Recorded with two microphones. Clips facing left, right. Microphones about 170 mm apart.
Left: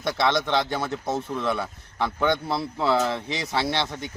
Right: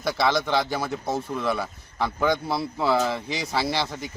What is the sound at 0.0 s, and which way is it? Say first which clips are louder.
Speech: even; 5° right (ahead or behind).